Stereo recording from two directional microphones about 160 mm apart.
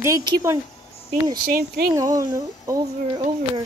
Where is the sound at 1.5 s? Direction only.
65° right (ahead or behind).